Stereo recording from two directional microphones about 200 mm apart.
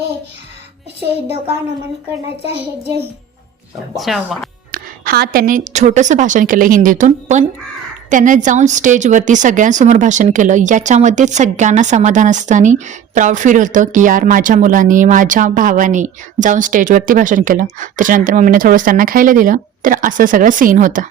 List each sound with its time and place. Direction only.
3.9 s speech: centre (ahead or behind)
4.7 s a woman's voice: 50° right (ahead or behind)